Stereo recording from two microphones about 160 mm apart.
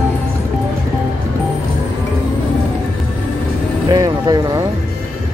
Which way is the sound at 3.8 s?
25° right (ahead or behind).